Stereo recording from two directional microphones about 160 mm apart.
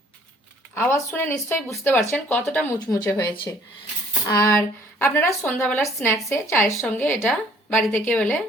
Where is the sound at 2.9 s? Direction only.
20° left (ahead or behind).